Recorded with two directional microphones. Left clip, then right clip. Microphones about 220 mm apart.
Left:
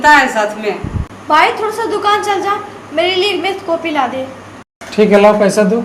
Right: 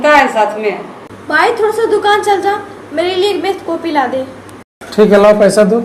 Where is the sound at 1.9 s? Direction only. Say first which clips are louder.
Even; 15° left (ahead or behind).